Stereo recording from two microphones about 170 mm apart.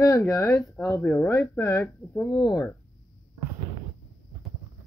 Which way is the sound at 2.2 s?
Centre (ahead or behind).